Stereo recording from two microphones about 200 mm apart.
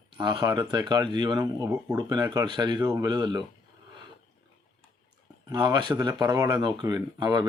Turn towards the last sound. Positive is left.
turn(degrees=-20)  # may be behind; listen again after turning